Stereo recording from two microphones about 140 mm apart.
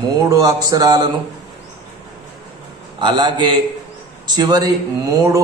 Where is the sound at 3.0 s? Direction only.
35° right (ahead or behind).